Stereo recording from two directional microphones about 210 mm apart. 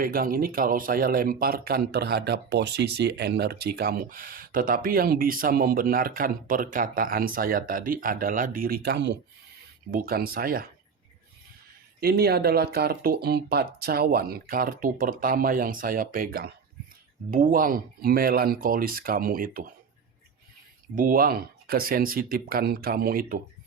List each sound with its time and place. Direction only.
0.0 s speech: 45° right (ahead or behind)
11.9 s speech: 45° right (ahead or behind)
20.9 s speech: 40° right (ahead or behind)